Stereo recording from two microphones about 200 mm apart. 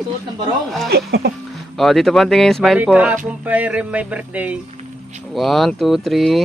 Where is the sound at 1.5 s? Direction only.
Centre (ahead or behind).